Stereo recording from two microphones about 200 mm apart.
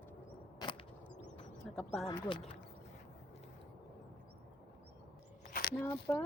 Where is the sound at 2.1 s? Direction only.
25° left (ahead or behind).